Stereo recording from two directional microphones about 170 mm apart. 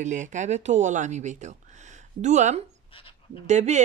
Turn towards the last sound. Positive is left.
turn(degrees=-45)  # may be behind; listen again after turning